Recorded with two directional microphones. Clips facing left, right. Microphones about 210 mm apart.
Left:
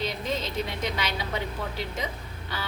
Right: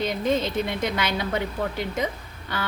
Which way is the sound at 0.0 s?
55° right (ahead or behind).